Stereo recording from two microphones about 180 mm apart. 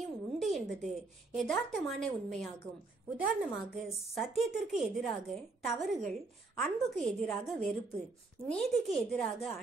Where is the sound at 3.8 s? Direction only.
Centre (ahead or behind).